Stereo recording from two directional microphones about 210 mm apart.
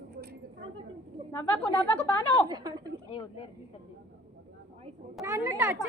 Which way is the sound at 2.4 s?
20° right (ahead or behind).